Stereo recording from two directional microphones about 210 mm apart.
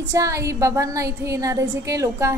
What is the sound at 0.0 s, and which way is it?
A woman's voice, 15° right (ahead or behind).